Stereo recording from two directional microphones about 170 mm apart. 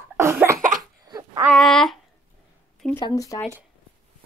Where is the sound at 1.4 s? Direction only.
Centre (ahead or behind).